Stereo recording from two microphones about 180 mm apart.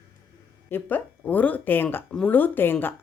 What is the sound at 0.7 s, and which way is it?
Speech, 10° left (ahead or behind).